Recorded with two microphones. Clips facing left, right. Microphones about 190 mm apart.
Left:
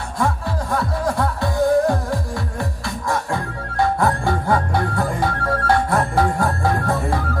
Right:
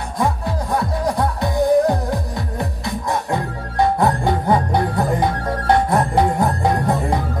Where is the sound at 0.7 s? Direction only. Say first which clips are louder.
Right 1 dB; 20° right (ahead or behind).